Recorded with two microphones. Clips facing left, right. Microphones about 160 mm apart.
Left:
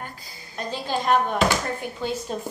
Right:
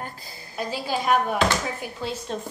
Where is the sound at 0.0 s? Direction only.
40° right (ahead or behind).